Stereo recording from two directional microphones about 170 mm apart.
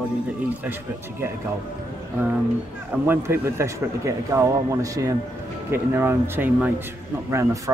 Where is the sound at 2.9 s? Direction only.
10° right (ahead or behind).